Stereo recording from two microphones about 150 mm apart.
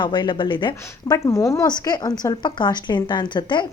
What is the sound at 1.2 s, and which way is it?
A woman's voice, 20° left (ahead or behind).